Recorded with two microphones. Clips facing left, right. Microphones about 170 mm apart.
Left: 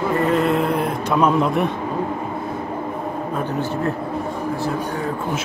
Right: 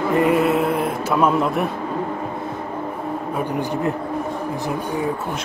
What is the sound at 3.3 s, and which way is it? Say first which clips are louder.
Speech: right 1 dB; 15° right (ahead or behind).